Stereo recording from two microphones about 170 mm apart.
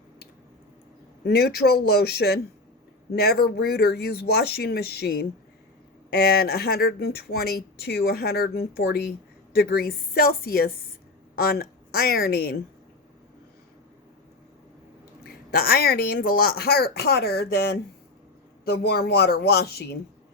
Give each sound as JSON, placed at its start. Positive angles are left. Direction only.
{"t": 1.2, "sound": "a woman's voice", "side_deg": 70}
{"t": 15.2, "sound": "speech", "side_deg": 60}